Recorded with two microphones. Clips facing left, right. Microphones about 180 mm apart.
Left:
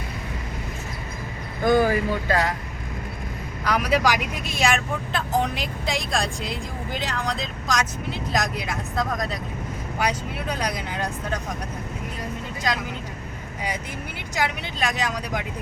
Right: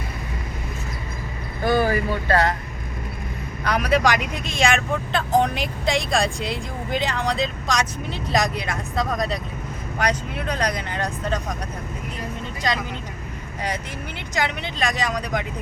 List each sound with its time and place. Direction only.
1.6 s speech: 15° left (ahead or behind)
3.7 s speech: 5° left (ahead or behind)
14.3 s speech: 5° left (ahead or behind)